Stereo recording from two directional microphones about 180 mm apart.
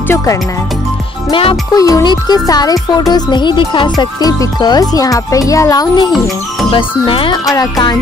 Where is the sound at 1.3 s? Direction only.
30° left (ahead or behind).